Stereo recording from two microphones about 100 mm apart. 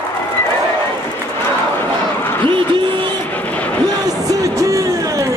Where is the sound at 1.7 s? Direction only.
20° left (ahead or behind).